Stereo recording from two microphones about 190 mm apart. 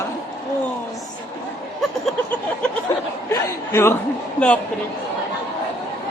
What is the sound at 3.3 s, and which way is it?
Speech, 15° left (ahead or behind).